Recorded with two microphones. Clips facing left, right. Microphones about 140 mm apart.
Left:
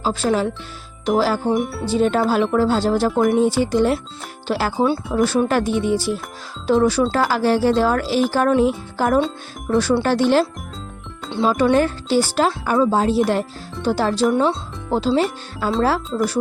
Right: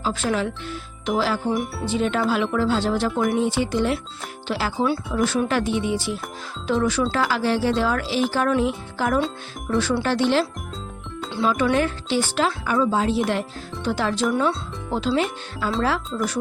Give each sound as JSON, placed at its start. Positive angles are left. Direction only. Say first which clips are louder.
{"t": 0.0, "sound": "speech", "louder": "left 4 dB", "side_deg": 35}
{"t": 11.4, "sound": "speech", "louder": "left 4 dB", "side_deg": 35}